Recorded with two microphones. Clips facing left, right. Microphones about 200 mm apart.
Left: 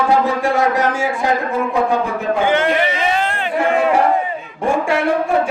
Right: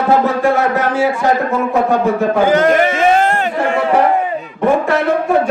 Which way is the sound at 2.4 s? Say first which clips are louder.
Right 5 dB; 40° right (ahead or behind).